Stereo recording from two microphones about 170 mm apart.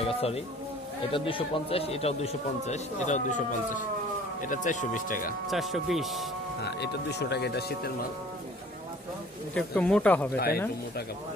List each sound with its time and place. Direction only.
0.0 s a man's voice: 35° left (ahead or behind); by 5.3 s 55° left (ahead or behind)
5.5 s speech: centre (ahead or behind)
6.6 s speech: 75° left (ahead or behind)
9.5 s speech: 5° left (ahead or behind)
10.3 s speech: 65° left (ahead or behind)